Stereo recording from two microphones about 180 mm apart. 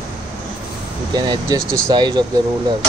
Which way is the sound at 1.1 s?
25° right (ahead or behind).